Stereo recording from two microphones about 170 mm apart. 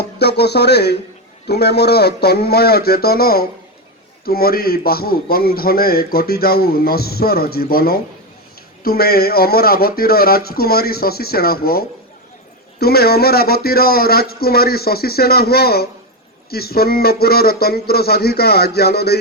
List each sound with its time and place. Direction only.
0.2 s a man's voice: 80° left